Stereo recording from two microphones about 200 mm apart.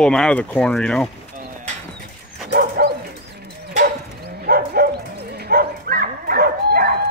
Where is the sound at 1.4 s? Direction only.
40° right (ahead or behind).